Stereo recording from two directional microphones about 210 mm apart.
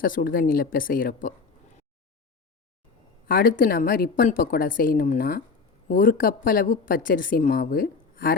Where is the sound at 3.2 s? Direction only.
40° left (ahead or behind).